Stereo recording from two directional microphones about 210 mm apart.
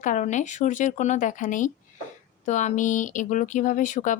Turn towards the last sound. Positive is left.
turn(degrees=35)  # may be behind; listen again after turning